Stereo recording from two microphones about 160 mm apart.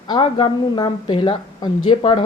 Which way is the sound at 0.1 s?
30° left (ahead or behind).